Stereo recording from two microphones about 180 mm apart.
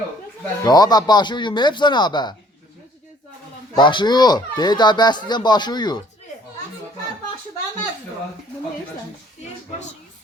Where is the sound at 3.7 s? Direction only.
25° left (ahead or behind).